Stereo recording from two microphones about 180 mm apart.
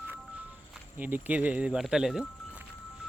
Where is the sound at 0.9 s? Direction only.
10° right (ahead or behind).